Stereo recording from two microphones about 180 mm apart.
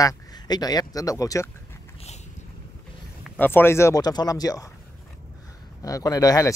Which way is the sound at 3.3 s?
10° left (ahead or behind).